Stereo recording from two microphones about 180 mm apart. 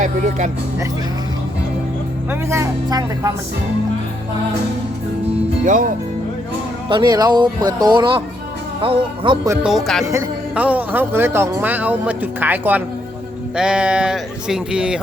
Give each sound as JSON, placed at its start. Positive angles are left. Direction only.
{"t": 0.0, "sound": "speech", "side_deg": -45}
{"t": 2.3, "sound": "speech", "side_deg": -15}
{"t": 5.6, "sound": "speech", "side_deg": -45}
{"t": 6.8, "sound": "speech", "side_deg": -25}
{"t": 9.6, "sound": "speech", "side_deg": 0}
{"t": 10.1, "sound": "speech", "side_deg": -10}